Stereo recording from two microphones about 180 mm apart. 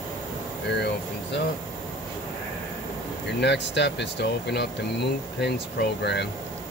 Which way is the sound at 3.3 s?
75° left (ahead or behind).